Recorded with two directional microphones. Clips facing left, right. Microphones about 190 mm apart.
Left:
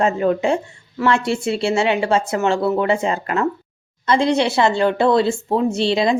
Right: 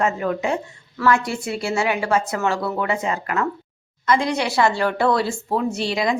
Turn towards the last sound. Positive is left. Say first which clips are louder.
# left 5 dB
turn(degrees=25)  # may be behind; listen again after turning